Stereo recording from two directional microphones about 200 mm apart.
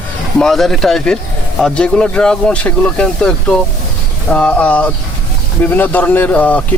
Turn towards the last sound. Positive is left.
turn(degrees=10)  # may be behind; listen again after turning